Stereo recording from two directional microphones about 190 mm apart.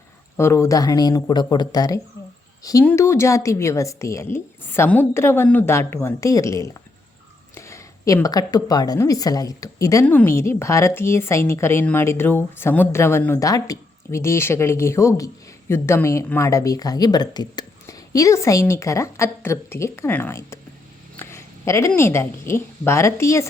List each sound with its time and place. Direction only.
0.3 s speech: 15° left (ahead or behind)